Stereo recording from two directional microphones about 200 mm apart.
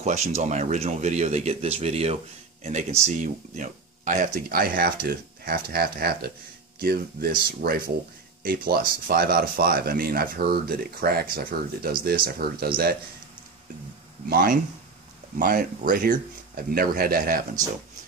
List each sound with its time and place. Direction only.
0.0 s speech: 35° right (ahead or behind)
14.3 s speech: 45° right (ahead or behind)